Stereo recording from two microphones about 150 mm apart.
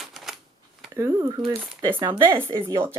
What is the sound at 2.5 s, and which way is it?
Speech, 35° right (ahead or behind).